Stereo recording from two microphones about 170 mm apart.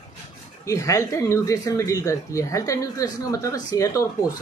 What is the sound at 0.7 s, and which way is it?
Speech, 20° left (ahead or behind).